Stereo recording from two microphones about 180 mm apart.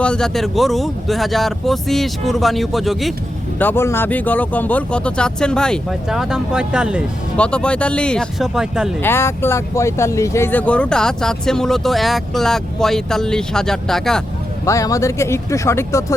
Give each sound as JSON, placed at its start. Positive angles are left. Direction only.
{"t": 0.0, "sound": "speech", "side_deg": 5}
{"t": 3.6, "sound": "speech", "side_deg": 10}
{"t": 7.3, "sound": "speech", "side_deg": 5}
{"t": 9.0, "sound": "speech", "side_deg": 15}
{"t": 14.6, "sound": "speech", "side_deg": 15}